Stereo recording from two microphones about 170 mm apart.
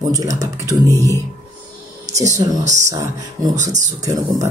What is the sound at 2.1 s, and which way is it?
Speech, 20° right (ahead or behind).